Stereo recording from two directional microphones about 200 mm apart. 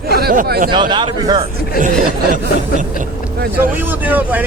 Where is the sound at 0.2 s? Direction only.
50° right (ahead or behind).